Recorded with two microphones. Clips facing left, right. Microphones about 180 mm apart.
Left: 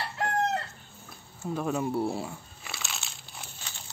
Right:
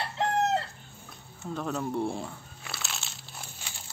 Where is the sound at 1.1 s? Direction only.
10° left (ahead or behind).